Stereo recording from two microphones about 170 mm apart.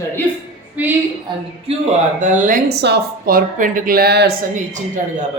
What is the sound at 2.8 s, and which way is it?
Speech, 70° right (ahead or behind).